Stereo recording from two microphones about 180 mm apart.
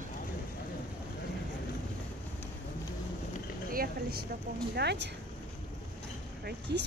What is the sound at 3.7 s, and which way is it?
Speech, 55° right (ahead or behind).